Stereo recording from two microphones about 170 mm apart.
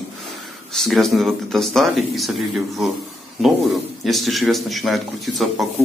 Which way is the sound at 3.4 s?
Centre (ahead or behind).